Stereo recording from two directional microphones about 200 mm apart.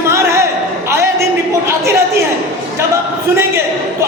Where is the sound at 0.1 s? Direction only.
15° right (ahead or behind).